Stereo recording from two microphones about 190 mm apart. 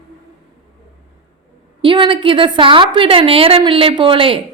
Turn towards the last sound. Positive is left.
turn(degrees=-30)  # may be behind; listen again after turning